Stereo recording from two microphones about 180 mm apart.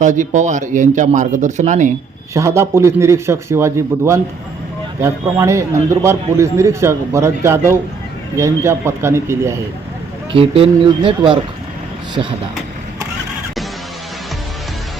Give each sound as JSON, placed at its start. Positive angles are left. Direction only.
{"t": 0.0, "sound": "speech", "side_deg": -45}
{"t": 2.3, "sound": "a man's voice", "side_deg": -15}
{"t": 10.3, "sound": "speech", "side_deg": -30}